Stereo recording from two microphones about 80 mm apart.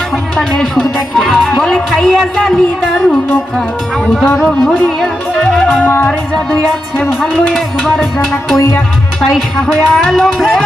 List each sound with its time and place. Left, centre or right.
0.3 s speech: centre
4.4 s speech: centre
5.5 s music: centre
5.8 s music: left
6.1 s speech: centre